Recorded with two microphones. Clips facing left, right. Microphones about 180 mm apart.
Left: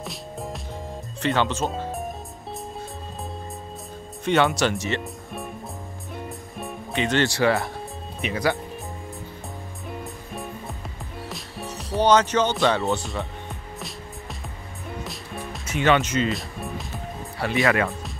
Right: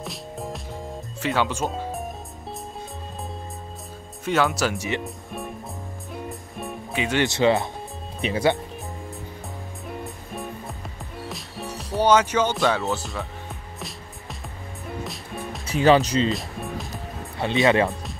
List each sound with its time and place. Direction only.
0.0 s music: centre (ahead or behind)
1.2 s speech: 10° right (ahead or behind)
4.2 s speech: centre (ahead or behind)
5.0 s speech: centre (ahead or behind)
6.1 s music: centre (ahead or behind)
7.2 s speech: 20° right (ahead or behind)
9.8 s music: centre (ahead or behind)
11.8 s speech: 5° right (ahead or behind)
15.0 s music: centre (ahead or behind)
15.6 s speech: 35° right (ahead or behind)
16.3 s music: centre (ahead or behind)
17.4 s speech: 25° right (ahead or behind)